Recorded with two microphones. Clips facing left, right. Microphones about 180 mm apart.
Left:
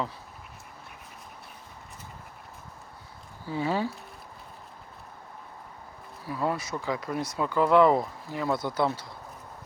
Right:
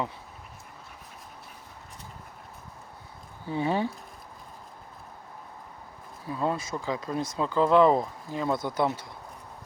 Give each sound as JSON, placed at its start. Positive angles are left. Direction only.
{"t": 3.4, "sound": "speech", "side_deg": -20}
{"t": 6.2, "sound": "speech", "side_deg": -20}